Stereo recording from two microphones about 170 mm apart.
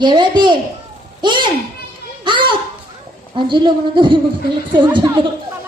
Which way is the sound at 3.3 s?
25° right (ahead or behind).